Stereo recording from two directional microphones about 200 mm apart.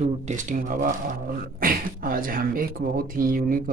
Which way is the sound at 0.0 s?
35° right (ahead or behind).